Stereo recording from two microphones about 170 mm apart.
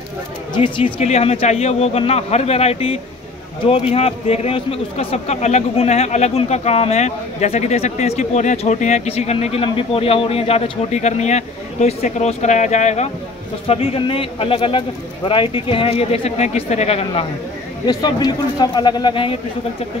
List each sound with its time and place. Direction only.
0.6 s a man's voice: 30° left (ahead or behind)
17.8 s speech: 25° left (ahead or behind)